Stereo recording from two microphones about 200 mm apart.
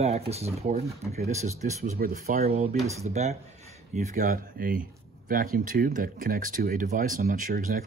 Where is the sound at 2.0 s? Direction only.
45° right (ahead or behind).